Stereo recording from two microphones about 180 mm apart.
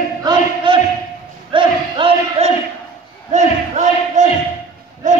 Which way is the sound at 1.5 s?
30° right (ahead or behind).